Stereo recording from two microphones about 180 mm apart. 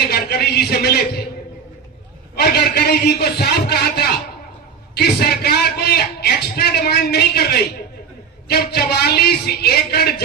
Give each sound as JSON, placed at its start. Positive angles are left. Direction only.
{"t": 0.1, "sound": "a man's voice", "side_deg": 60}
{"t": 2.3, "sound": "a man's voice", "side_deg": 65}